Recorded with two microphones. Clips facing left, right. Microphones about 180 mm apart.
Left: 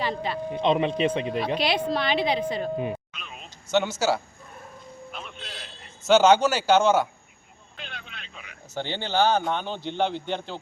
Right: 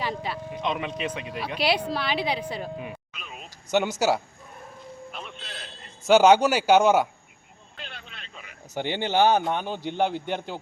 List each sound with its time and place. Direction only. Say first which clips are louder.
0.0 s speech: left 2 dB; 10° right (ahead or behind)
0.5 s speech: left 8 dB; 30° left (ahead or behind)
1.5 s a man's voice: right 3 dB; 10° right (ahead or behind)
2.7 s speech: left 7 dB; 30° left (ahead or behind)
3.1 s a sound: right 1 dB; 5° right (ahead or behind)
3.7 s a man's voice: even; 15° right (ahead or behind)
5.1 s music: even; centre (ahead or behind)
6.1 s a man's voice: right 1 dB; 15° right (ahead or behind)
7.8 s vehicle: left 1 dB; centre (ahead or behind)
8.7 s a man's voice: right 2 dB; 15° right (ahead or behind)